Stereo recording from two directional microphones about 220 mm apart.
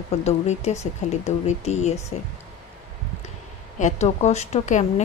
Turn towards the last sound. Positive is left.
turn(degrees=35)  # may be behind; listen again after turning